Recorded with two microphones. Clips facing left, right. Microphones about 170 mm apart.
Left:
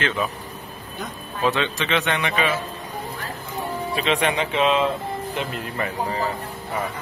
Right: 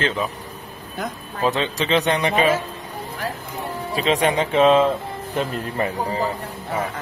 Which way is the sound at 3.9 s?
35° right (ahead or behind).